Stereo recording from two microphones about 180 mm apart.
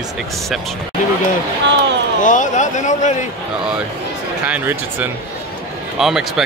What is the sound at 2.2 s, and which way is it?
A man's voice, 45° left (ahead or behind).